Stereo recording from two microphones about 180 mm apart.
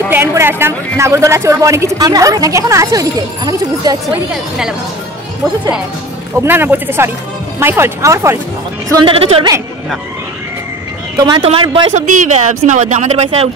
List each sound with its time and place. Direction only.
0.1 s speech: 15° right (ahead or behind)
4.1 s a woman's voice: 5° right (ahead or behind)
6.3 s speech: 10° right (ahead or behind)
9.0 s speech: 30° right (ahead or behind)
11.1 s a man's voice: 25° right (ahead or behind)
11.9 s speech: 40° right (ahead or behind)